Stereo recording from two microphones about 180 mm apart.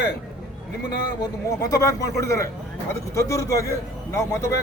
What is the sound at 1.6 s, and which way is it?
A man's voice, 20° left (ahead or behind).